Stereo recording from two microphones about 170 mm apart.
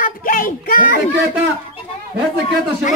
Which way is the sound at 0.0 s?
55° left (ahead or behind).